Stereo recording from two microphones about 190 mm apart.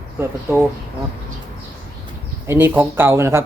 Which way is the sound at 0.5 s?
10° right (ahead or behind).